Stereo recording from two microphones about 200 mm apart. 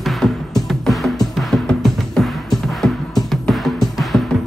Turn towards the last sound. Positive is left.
turn(degrees=0)  # may be behind; listen again after turning